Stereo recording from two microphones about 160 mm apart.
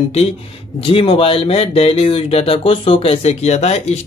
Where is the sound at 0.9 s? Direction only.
35° left (ahead or behind).